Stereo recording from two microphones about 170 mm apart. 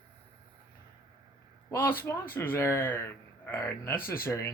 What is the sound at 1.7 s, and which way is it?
A man's voice, 10° left (ahead or behind).